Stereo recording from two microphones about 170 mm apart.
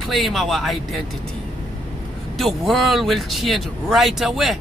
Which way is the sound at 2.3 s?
Centre (ahead or behind).